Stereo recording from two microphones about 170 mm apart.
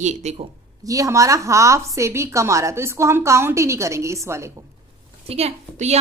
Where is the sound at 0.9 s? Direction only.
20° right (ahead or behind).